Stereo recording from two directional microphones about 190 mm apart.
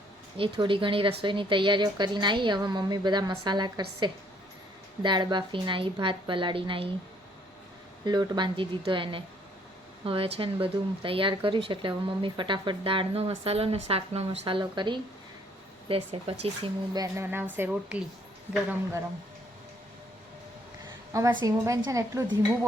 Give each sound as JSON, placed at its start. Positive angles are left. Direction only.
{"t": 0.3, "sound": "speech", "side_deg": -25}
{"t": 8.0, "sound": "speech", "side_deg": -20}
{"t": 16.9, "sound": "a woman's voice", "side_deg": -15}
{"t": 21.1, "sound": "a woman's voice", "side_deg": -15}